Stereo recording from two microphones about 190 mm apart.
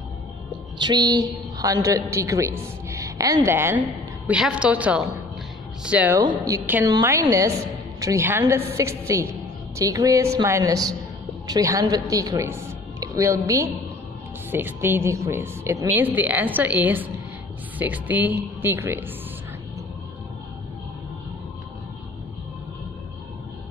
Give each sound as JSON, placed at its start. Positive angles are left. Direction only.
{"t": 0.7, "sound": "a woman's voice", "side_deg": -20}